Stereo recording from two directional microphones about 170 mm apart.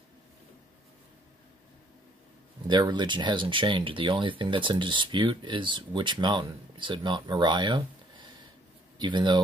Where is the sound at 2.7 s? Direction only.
25° right (ahead or behind).